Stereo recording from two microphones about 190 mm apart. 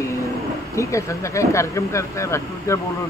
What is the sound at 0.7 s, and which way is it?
A man's voice, 15° left (ahead or behind).